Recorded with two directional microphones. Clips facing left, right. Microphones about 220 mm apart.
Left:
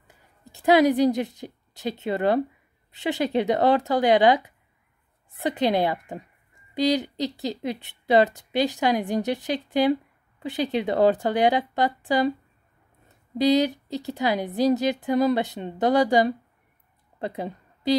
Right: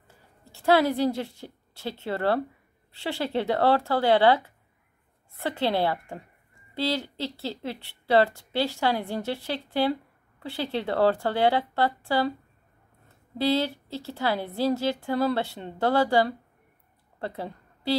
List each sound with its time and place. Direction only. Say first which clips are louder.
0.5 s a woman's voice: left 4 dB; 15° left (ahead or behind)
13.4 s a woman's voice: left 5 dB; 15° left (ahead or behind)
17.2 s a sound: left 3 dB; 15° left (ahead or behind)